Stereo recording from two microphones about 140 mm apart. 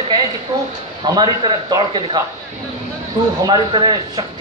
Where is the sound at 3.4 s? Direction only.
35° right (ahead or behind).